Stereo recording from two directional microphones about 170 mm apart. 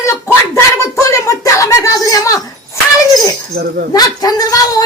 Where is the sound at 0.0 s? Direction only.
15° left (ahead or behind).